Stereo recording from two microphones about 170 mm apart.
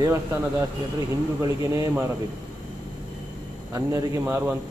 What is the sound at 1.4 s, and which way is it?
Speech, 20° right (ahead or behind).